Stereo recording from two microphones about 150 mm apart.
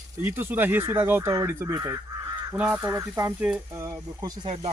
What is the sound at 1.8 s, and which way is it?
Crow, 25° right (ahead or behind).